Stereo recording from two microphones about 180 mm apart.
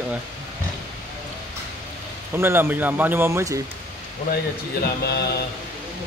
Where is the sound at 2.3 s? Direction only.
15° right (ahead or behind).